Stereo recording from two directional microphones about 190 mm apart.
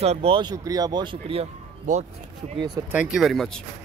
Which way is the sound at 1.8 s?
40° right (ahead or behind).